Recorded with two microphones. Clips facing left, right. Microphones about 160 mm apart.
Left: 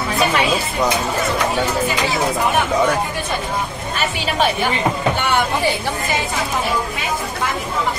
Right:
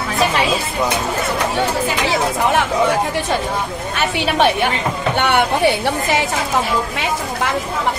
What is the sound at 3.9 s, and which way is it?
A woman's voice, 65° right (ahead or behind).